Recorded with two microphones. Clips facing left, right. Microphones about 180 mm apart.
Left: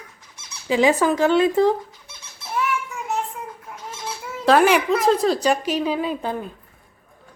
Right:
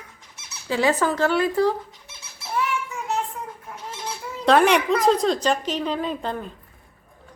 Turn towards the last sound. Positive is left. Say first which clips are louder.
# left 2 dB
turn(degrees=5)  # may be behind; listen again after turning